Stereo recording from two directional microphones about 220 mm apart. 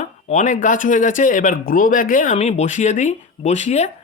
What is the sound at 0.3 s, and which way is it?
Speech, 35° left (ahead or behind).